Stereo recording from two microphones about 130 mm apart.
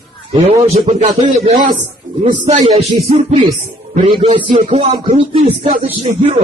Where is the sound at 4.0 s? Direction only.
45° right (ahead or behind).